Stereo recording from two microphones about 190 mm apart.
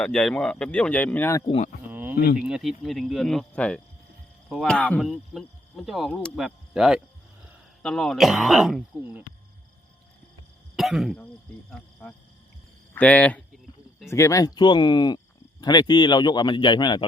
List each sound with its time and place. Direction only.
0.0 s speech: 5° left (ahead or behind)
1.5 s speech: 35° left (ahead or behind)
1.9 s a sound: 10° right (ahead or behind)
2.4 s speech: centre (ahead or behind)
10.8 s speech: centre (ahead or behind)
12.0 s speech: 10° left (ahead or behind)